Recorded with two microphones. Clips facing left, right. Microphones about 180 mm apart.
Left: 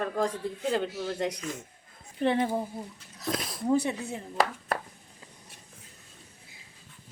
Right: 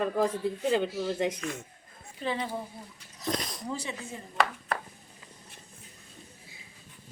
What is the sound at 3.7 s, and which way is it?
Speech, 60° left (ahead or behind).